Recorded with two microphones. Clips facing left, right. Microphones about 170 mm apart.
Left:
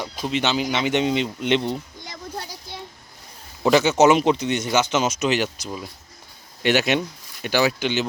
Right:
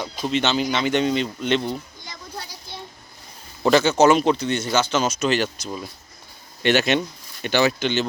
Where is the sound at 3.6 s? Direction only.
10° left (ahead or behind).